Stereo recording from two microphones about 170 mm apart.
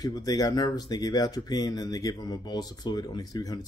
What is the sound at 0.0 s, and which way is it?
Speech, 25° left (ahead or behind).